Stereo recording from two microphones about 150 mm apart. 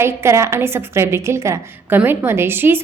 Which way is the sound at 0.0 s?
20° right (ahead or behind).